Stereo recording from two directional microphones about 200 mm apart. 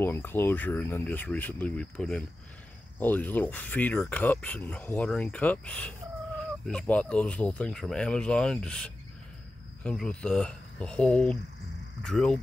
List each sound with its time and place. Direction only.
0.0 s speech: 10° left (ahead or behind)